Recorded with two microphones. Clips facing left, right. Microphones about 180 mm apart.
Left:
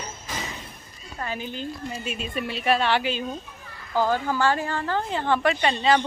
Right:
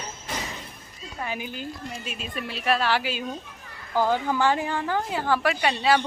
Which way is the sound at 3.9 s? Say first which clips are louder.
Even; 15° right (ahead or behind).